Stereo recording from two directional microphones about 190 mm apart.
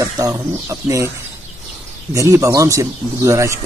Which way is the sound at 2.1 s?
15° right (ahead or behind).